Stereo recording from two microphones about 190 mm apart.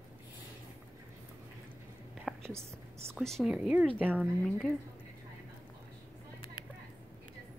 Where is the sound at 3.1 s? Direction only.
Centre (ahead or behind).